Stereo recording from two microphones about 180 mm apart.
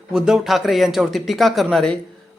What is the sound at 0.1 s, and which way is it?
Speech, 5° right (ahead or behind).